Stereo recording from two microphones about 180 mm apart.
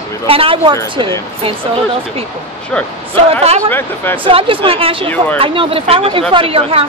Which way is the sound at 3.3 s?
35° right (ahead or behind).